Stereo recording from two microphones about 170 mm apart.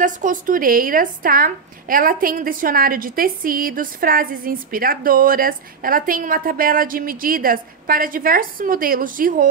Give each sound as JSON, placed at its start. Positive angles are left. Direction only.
{"t": 0.0, "sound": "a woman's voice", "side_deg": -50}